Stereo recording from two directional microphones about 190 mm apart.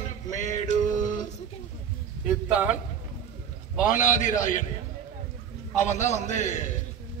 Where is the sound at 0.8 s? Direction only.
20° left (ahead or behind).